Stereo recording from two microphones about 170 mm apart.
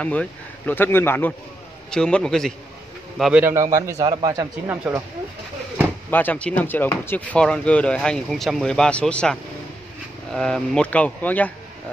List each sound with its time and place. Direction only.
0.0 s a man's voice: 10° left (ahead or behind); by 4.5 s 25° right (ahead or behind)
4.6 s a man's voice: 10° right (ahead or behind)
6.0 s speech: 10° left (ahead or behind)